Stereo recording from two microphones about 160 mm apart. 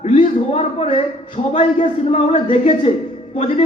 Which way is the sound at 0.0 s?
40° left (ahead or behind).